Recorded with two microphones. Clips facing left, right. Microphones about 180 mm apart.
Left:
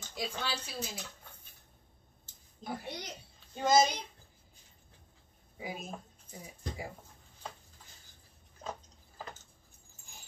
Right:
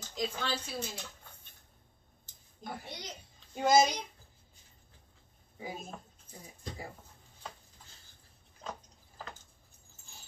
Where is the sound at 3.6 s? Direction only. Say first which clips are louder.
Right 1 dB; 10° right (ahead or behind).